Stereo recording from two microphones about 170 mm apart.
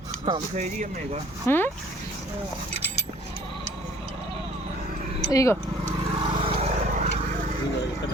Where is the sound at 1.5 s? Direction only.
15° left (ahead or behind).